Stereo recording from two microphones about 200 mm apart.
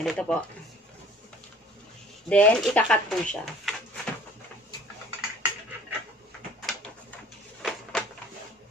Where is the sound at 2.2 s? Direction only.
5° left (ahead or behind).